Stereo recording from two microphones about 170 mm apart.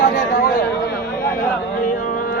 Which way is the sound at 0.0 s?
65° left (ahead or behind).